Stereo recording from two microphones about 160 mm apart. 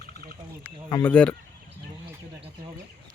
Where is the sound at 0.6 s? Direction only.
15° left (ahead or behind).